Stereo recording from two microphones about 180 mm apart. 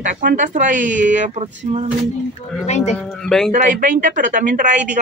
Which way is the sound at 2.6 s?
40° left (ahead or behind).